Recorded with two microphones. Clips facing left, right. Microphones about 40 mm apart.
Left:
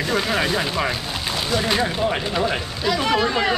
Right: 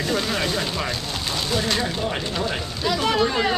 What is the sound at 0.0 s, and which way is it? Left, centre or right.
Speech, centre.